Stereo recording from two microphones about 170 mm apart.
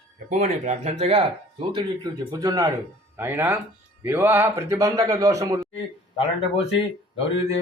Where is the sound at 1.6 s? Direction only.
30° right (ahead or behind).